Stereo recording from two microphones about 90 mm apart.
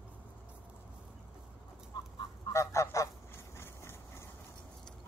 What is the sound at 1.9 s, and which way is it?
Fowl, 60° left (ahead or behind).